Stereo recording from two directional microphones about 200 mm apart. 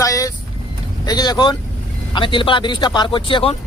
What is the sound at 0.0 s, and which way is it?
Vehicle, 15° left (ahead or behind).